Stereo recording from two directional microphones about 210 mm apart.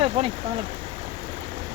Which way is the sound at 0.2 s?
25° right (ahead or behind).